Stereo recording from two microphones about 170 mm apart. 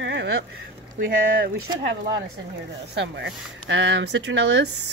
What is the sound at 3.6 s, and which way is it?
Speech, 90° right.